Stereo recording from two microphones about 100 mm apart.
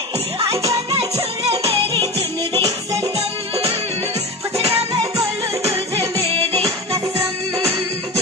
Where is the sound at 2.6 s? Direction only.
35° right (ahead or behind).